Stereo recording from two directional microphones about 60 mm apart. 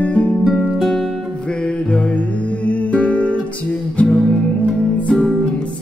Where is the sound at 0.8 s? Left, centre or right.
Centre.